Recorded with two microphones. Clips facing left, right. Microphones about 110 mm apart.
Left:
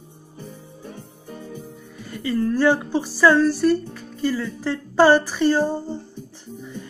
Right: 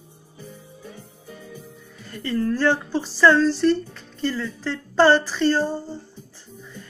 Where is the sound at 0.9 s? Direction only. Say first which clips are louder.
Left 4 dB; 40° left (ahead or behind).